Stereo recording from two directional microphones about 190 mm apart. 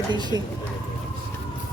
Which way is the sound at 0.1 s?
20° right (ahead or behind).